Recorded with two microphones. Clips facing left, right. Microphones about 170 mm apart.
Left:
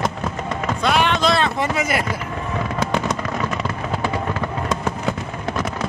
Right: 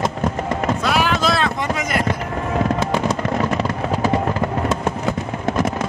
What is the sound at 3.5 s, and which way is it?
Fireworks, 30° right (ahead or behind).